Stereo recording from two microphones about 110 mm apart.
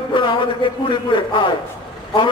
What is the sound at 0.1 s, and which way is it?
A man's voice, 45° left (ahead or behind).